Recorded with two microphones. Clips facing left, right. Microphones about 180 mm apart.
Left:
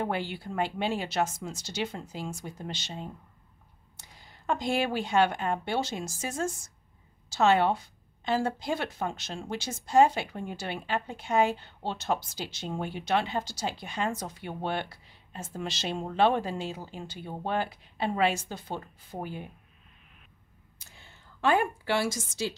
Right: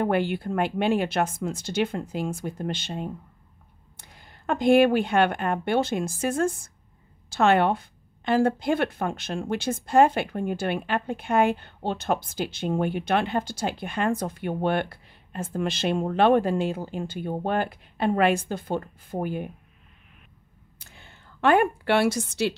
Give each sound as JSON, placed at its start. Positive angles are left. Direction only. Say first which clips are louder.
{"t": 0.0, "sound": "a woman's voice", "louder": "right 8 dB", "side_deg": -55}
{"t": 20.8, "sound": "a woman's voice", "louder": "right 4 dB", "side_deg": -60}